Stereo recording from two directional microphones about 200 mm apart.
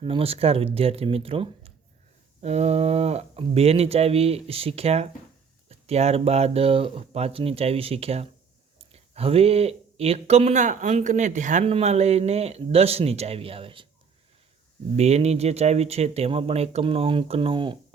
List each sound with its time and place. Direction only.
0.0 s speech: 25° right (ahead or behind)
14.9 s speech: 30° right (ahead or behind)